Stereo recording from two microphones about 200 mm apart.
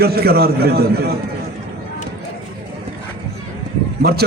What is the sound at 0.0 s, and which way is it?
A man's voice, 50° right (ahead or behind).